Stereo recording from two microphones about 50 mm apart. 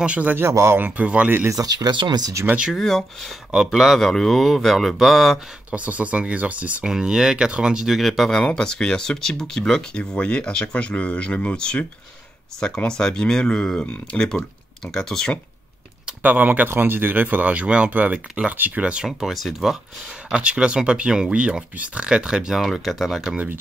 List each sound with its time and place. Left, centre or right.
0.0 s speech: right
0.5 s speech: right
0.7 s speech: right
1.6 s speech: right
2.7 s speech: centre
5.7 s speech: right
6.9 s speech: centre
7.8 s speech: centre
8.5 s speech: centre
16.2 s speech: right
16.6 s speech: right
19.1 s speech: centre
20.3 s speech: right
22.6 s speech: centre